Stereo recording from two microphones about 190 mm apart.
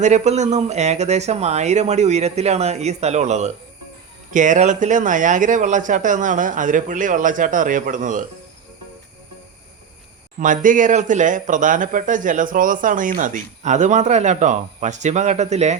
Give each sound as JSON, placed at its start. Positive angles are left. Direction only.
{"t": 0.0, "sound": "speech", "side_deg": -35}
{"t": 10.4, "sound": "speech", "side_deg": -45}